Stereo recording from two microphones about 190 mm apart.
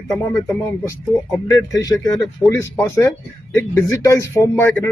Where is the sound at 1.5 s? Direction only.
20° left (ahead or behind).